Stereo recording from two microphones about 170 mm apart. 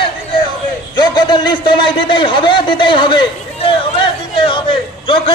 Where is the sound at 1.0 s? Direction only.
25° left (ahead or behind).